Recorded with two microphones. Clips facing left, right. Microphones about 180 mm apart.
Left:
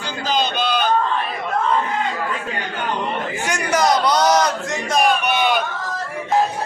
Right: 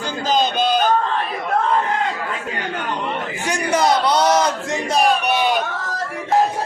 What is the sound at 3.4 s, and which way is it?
Crowd, 30° right (ahead or behind).